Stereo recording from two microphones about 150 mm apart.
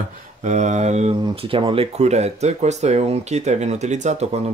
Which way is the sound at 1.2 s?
40° right (ahead or behind).